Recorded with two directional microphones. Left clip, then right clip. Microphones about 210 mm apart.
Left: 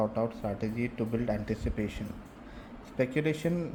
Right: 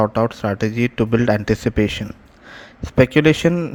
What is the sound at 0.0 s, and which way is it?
A man's voice, 35° right (ahead or behind).